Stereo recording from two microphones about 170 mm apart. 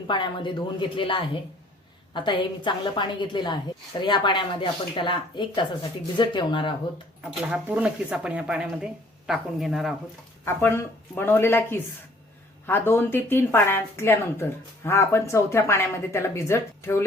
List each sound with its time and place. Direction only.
0.1 s speech: 30° left (ahead or behind)
7.3 s speech: 10° right (ahead or behind)
10.4 s speech: 15° left (ahead or behind)